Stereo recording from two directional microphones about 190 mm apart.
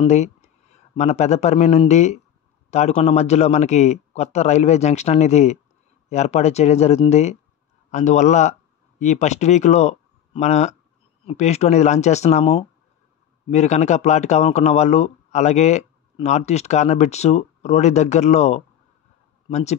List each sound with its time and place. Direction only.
0.0 s speech: 35° left (ahead or behind)